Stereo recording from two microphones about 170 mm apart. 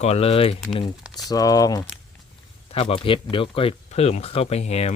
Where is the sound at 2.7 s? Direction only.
35° left (ahead or behind).